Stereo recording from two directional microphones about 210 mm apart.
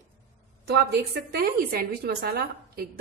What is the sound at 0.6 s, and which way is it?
A woman's voice, 50° right (ahead or behind).